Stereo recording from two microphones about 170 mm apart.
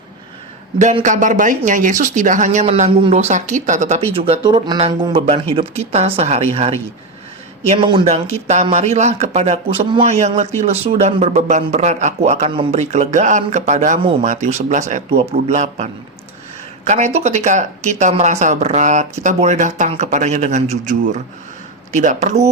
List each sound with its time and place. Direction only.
1.0 s a man's voice: 50° right (ahead or behind)
2.9 s speech: 35° right (ahead or behind)
7.8 s a man's voice: 30° right (ahead or behind)